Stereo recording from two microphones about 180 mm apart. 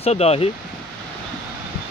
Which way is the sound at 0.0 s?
35° left (ahead or behind).